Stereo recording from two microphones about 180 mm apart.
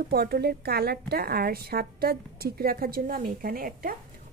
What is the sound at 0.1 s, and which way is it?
A woman's voice, 60° right (ahead or behind).